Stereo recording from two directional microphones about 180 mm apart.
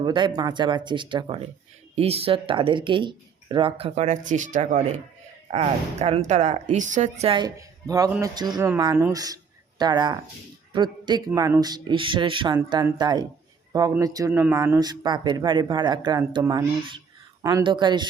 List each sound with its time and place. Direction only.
0.0 s speech: 25° right (ahead or behind)